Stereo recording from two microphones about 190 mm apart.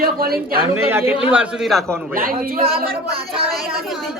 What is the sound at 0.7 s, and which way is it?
A man's voice, 10° right (ahead or behind).